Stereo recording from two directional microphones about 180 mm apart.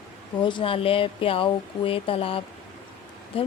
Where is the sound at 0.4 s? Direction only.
30° left (ahead or behind).